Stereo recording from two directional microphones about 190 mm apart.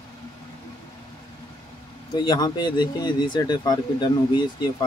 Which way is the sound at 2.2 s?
20° left (ahead or behind).